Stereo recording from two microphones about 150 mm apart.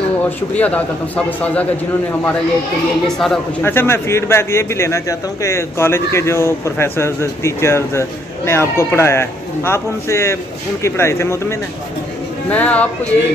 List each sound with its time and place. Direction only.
0.6 s a man's voice: 10° left (ahead or behind)
3.1 s speech: centre (ahead or behind)
3.6 s a man's voice: 15° left (ahead or behind)